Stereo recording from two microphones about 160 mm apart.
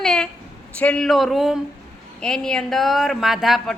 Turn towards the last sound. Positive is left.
turn(degrees=0)  # may be behind; listen again after turning